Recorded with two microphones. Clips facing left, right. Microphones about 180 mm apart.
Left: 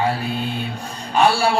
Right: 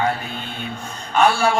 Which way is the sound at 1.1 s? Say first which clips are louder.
Even; 35° left (ahead or behind).